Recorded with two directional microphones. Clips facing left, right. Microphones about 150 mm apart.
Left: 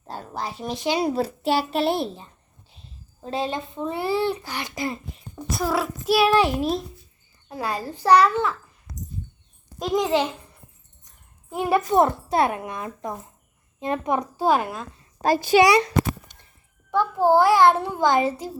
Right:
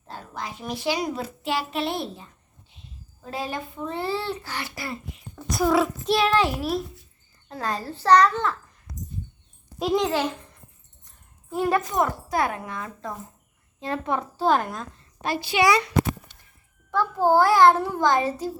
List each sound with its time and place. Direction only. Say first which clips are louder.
0.1 s a sound: left 4 dB; 35° left (ahead or behind)
0.9 s a child's voice: left 4 dB; 30° left (ahead or behind)
5.5 s a child's voice: right 3 dB; centre (ahead or behind); by 6.8 s 20° left (ahead or behind)
7.4 s a child's voice: left 1 dB; 10° left (ahead or behind)
9.7 s a child's voice: even; centre (ahead or behind)
11.4 s a woman's voice: left 1 dB; 15° left (ahead or behind)
11.9 s a child's voice: left 5 dB; 25° left (ahead or behind); by 14.8 s 5° left (ahead or behind)
15.2 s a child's voice: left 8 dB; 45° left (ahead or behind)
16.3 s a sound: left 3 dB; 15° left (ahead or behind)
16.9 s a child's voice: left 2 dB; 15° left (ahead or behind)